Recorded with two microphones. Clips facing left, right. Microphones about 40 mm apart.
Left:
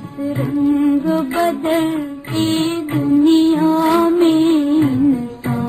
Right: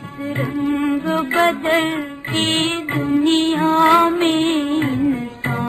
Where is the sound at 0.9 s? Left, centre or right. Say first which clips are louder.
Left 3 dB; centre.